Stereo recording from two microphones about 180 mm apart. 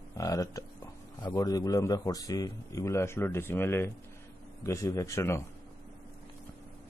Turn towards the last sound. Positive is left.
turn(degrees=15)  # may be behind; listen again after turning